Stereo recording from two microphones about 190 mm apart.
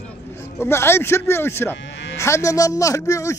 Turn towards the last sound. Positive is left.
turn(degrees=15)  # may be behind; listen again after turning